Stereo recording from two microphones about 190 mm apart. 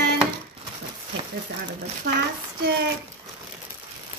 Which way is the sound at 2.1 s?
55° right (ahead or behind).